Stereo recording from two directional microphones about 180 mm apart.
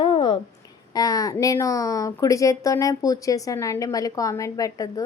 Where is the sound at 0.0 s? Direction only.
30° left (ahead or behind).